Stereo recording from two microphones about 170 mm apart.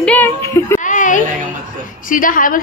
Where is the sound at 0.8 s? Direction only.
50° left (ahead or behind).